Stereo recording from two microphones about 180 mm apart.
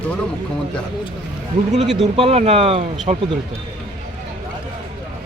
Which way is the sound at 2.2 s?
35° right (ahead or behind).